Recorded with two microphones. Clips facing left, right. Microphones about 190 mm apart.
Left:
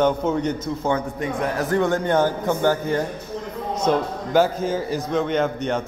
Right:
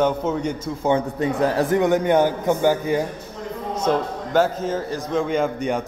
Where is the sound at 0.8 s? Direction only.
25° right (ahead or behind).